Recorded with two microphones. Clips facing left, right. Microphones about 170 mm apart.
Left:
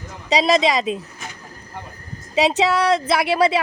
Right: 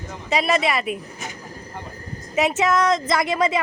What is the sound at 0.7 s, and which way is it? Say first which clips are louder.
Speech: left 3 dB; 25° left (ahead or behind).